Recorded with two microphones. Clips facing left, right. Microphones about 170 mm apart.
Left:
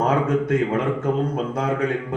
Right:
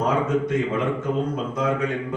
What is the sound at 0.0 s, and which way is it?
A man's voice, 60° left (ahead or behind).